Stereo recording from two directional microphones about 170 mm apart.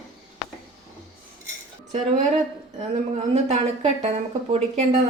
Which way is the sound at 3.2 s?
40° right (ahead or behind).